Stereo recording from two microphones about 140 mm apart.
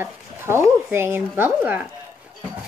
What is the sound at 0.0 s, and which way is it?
Speech, 15° right (ahead or behind).